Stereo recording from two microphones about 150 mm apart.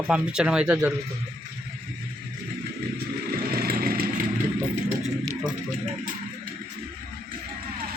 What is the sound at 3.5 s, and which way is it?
Vehicle, 90° right.